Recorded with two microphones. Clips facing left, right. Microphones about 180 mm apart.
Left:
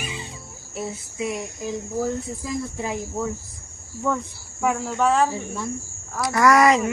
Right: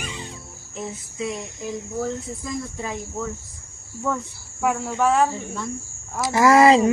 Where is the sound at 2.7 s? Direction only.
15° left (ahead or behind).